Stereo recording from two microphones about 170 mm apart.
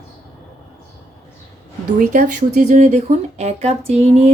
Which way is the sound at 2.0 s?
50° right (ahead or behind).